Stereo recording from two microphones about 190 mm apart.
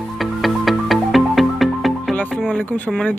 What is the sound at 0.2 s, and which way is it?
Music, centre (ahead or behind).